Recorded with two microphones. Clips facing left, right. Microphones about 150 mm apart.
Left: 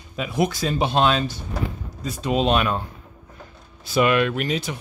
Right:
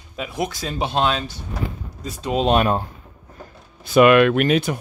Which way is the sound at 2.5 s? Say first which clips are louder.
Right 3 dB; 40° right (ahead or behind).